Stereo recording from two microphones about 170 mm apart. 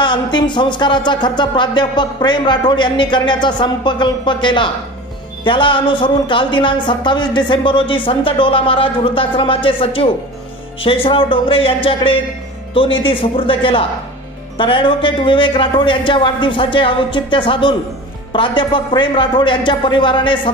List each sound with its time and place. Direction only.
0.0 s speech: 25° left (ahead or behind)